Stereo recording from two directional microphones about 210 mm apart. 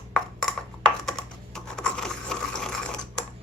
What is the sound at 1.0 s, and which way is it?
Sewing machine, 5° left (ahead or behind).